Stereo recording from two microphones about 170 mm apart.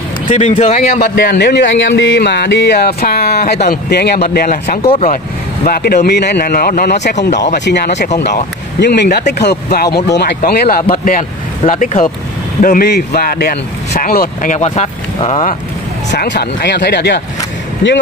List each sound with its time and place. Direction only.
0.3 s speech: 45° left (ahead or behind); by 4.5 s 65° left (ahead or behind)
4.8 s speech: 35° left (ahead or behind)
5.1 s speech: 55° left (ahead or behind)
6.0 s speech: 75° left (ahead or behind)
11.1 s speech: 50° left (ahead or behind)
12.6 s speech: 65° left (ahead or behind); by 15.5 s 45° left (ahead or behind)
16.1 s speech: 85° left